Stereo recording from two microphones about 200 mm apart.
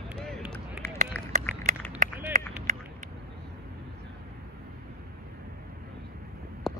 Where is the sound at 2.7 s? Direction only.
40° right (ahead or behind).